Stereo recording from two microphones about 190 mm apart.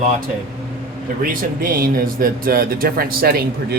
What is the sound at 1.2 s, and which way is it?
Speech, 50° right (ahead or behind).